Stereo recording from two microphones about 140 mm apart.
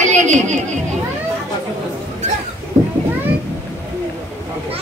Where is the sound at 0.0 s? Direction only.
60° right (ahead or behind).